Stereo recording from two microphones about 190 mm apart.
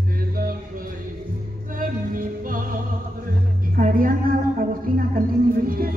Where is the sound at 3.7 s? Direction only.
45° right (ahead or behind).